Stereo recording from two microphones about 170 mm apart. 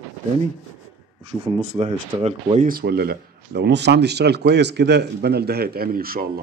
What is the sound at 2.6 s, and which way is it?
Speech, 65° right (ahead or behind).